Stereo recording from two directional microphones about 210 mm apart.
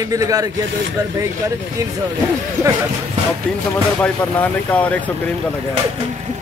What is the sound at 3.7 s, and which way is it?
Speech, 10° left (ahead or behind).